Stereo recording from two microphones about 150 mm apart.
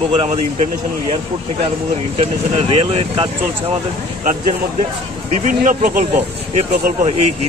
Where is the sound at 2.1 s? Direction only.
45° right (ahead or behind).